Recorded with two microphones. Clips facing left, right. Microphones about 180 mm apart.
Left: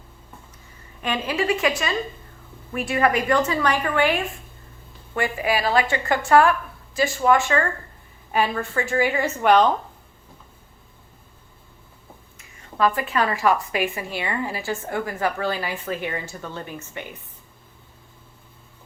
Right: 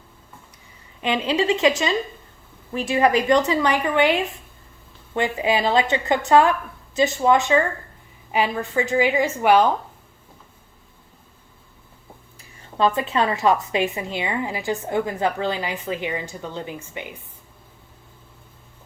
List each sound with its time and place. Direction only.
1.0 s a woman's voice: 20° right (ahead or behind)
12.4 s a woman's voice: 30° right (ahead or behind); by 17.2 s 10° right (ahead or behind)